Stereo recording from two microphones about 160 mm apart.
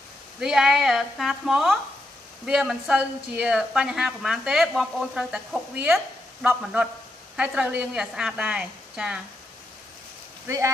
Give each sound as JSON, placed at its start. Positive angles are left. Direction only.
{"t": 0.4, "sound": "a woman's voice", "side_deg": -5}
{"t": 10.4, "sound": "speech", "side_deg": -20}